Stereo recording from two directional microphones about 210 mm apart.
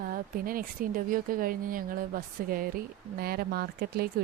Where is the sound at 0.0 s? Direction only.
40° right (ahead or behind).